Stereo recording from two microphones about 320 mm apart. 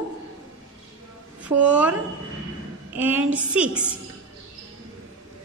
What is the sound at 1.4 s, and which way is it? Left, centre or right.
A woman's voice, centre.